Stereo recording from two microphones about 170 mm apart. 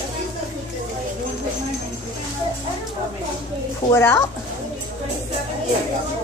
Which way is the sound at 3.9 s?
15° left (ahead or behind).